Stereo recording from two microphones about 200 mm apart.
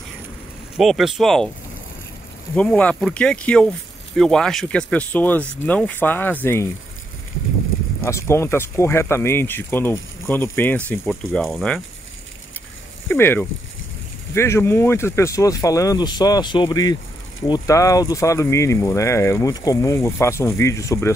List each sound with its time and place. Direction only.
0.7 s speech: centre (ahead or behind)
2.5 s speech: 5° left (ahead or behind)
8.0 s speech: 15° left (ahead or behind)
13.1 s speech: 10° left (ahead or behind)